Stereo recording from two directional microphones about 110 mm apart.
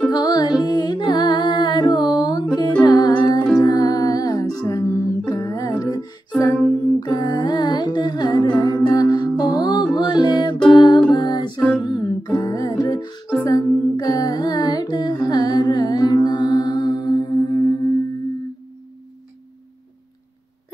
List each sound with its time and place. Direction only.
0.1 s music: 35° left (ahead or behind)
7.0 s humming: 40° left (ahead or behind)
9.9 s music: 40° left (ahead or behind)